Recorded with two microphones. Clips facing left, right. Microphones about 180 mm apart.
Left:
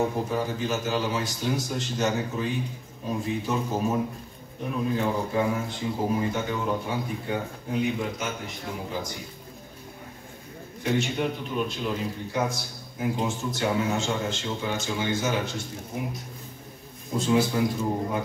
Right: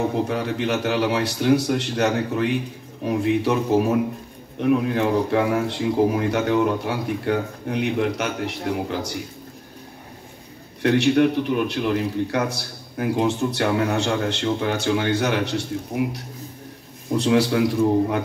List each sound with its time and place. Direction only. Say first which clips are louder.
0.1 s a man's voice: right 4 dB; 75° right (ahead or behind)
10.8 s a man's voice: right 9 dB; 75° right (ahead or behind)
17.2 s a man's voice: right 4 dB; 75° right (ahead or behind)